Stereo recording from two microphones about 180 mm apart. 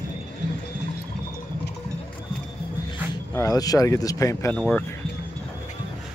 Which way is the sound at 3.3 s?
20° left (ahead or behind).